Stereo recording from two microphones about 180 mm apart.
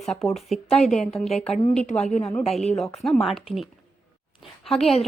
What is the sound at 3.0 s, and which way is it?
Speech, centre (ahead or behind).